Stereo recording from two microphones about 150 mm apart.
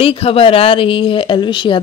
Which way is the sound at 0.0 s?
40° left (ahead or behind).